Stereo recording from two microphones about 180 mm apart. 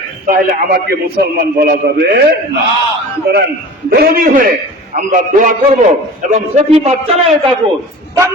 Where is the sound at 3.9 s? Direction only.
55° right (ahead or behind); by 6.9 s 35° right (ahead or behind).